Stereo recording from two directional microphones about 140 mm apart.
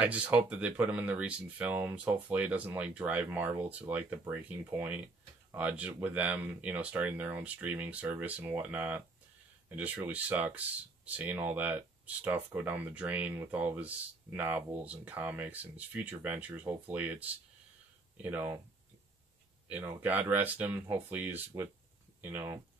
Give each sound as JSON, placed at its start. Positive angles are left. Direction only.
{"t": 0.0, "sound": "speech", "side_deg": -10}
{"t": 19.7, "sound": "speech", "side_deg": -10}